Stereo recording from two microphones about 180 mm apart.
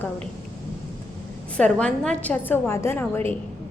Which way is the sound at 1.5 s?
5° left (ahead or behind).